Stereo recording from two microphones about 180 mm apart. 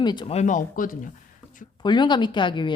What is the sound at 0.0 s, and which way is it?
Speech, 25° left (ahead or behind).